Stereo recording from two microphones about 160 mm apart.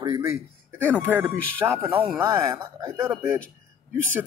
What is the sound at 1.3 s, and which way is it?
Speech, 10° left (ahead or behind).